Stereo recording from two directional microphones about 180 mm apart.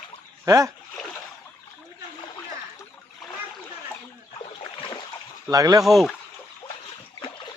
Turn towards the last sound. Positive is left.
turn(degrees=0)  # may be behind; listen again after turning